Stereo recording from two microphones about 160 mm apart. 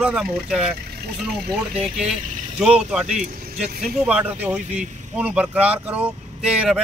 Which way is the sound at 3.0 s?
45° right (ahead or behind).